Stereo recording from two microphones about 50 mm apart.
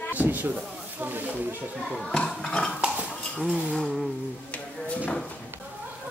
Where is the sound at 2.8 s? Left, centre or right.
Right.